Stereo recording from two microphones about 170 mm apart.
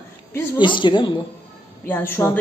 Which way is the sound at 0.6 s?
30° left (ahead or behind).